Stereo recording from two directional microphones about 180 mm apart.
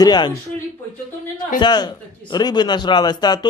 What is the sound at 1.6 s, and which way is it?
A man's voice, 25° left (ahead or behind).